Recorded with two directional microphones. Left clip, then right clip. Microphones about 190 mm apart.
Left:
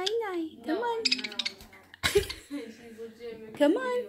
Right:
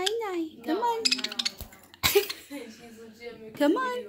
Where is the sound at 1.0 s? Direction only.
45° right (ahead or behind).